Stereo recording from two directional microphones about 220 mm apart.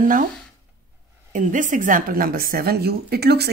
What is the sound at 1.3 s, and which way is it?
Speech, 35° right (ahead or behind).